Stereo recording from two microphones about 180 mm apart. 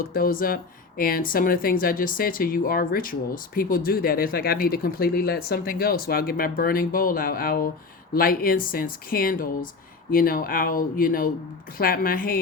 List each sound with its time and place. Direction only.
0.0 s speech: 55° left (ahead or behind)